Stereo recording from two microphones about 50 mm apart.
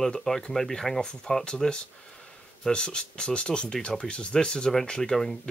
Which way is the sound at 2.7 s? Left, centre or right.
Centre.